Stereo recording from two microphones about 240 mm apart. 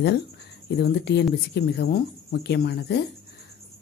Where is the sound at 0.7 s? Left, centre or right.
Left.